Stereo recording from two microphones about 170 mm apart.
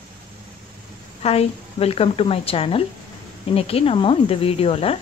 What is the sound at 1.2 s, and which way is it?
A woman's voice, 35° left (ahead or behind).